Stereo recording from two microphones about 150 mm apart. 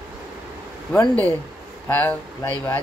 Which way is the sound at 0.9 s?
10° left (ahead or behind).